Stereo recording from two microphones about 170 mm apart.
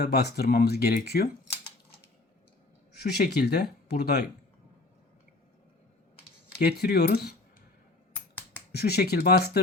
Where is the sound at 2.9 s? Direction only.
70° left (ahead or behind).